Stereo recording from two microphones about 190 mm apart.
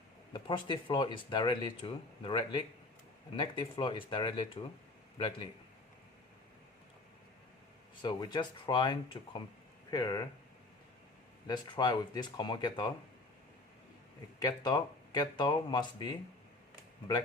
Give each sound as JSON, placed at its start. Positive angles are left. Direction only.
{"t": 0.3, "sound": "speech", "side_deg": 25}
{"t": 8.0, "sound": "speech", "side_deg": 25}
{"t": 11.4, "sound": "speech", "side_deg": 20}
{"t": 14.3, "sound": "speech", "side_deg": 20}